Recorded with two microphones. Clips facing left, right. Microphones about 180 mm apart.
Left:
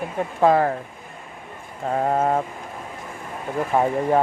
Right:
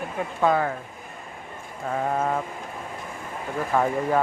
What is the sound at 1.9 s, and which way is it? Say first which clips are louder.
Mantra: left 4 dB; 35° left (ahead or behind).